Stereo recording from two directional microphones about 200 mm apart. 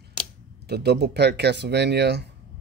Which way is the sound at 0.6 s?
55° right (ahead or behind).